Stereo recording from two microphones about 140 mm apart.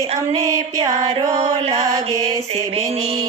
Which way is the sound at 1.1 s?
50° right (ahead or behind).